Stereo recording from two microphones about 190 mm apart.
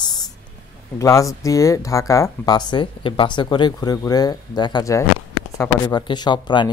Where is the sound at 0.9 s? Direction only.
15° left (ahead or behind).